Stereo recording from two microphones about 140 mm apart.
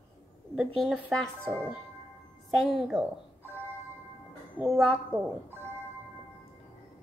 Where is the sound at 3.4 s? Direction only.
15° right (ahead or behind).